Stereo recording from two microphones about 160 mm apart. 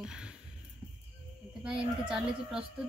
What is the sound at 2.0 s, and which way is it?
Speech, 5° right (ahead or behind).